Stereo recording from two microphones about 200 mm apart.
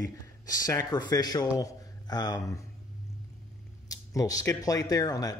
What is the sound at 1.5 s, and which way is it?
Mantra, 20° left (ahead or behind).